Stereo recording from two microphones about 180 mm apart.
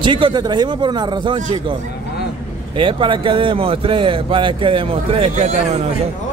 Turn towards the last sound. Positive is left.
turn(degrees=-40)  # may be behind; listen again after turning